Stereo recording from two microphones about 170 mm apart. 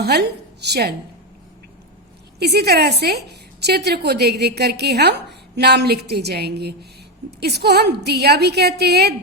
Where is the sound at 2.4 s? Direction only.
70° right (ahead or behind).